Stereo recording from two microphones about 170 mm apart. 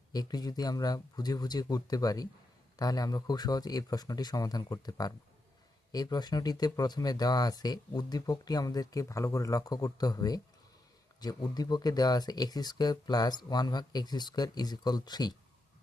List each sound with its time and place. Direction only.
0.1 s speech: 20° left (ahead or behind)